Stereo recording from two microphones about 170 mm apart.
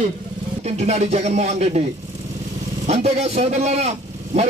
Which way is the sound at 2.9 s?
40° right (ahead or behind).